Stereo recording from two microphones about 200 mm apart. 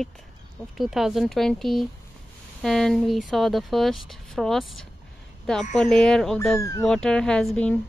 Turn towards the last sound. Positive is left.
turn(degrees=5)  # may be behind; listen again after turning